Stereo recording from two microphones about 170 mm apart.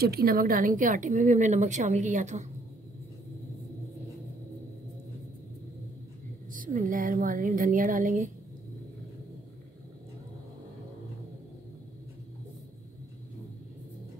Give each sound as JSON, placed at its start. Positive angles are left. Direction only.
{"t": 0.0, "sound": "a woman's voice", "side_deg": -65}
{"t": 6.5, "sound": "a woman's voice", "side_deg": -50}